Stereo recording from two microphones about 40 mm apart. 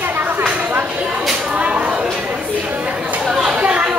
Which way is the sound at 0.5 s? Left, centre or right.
Right.